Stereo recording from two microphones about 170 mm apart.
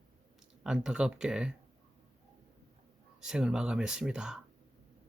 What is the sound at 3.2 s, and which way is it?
Speech, 5° right (ahead or behind).